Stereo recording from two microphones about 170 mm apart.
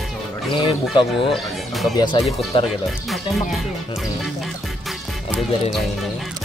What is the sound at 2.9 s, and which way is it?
Speech, centre (ahead or behind).